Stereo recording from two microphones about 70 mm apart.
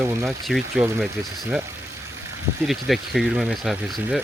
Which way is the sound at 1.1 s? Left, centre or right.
Right.